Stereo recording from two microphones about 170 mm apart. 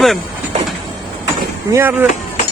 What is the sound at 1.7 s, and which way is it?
Speech, 10° right (ahead or behind).